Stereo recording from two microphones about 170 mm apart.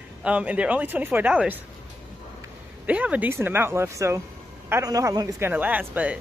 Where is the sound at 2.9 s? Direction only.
10° right (ahead or behind).